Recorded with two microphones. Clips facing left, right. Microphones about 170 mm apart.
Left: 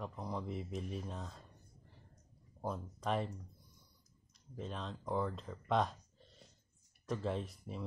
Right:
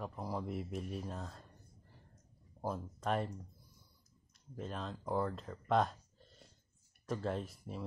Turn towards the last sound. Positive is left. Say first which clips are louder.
# even
turn(degrees=0)  # may be behind; listen again after turning